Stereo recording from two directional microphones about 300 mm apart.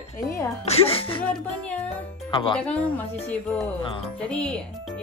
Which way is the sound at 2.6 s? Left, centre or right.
Centre.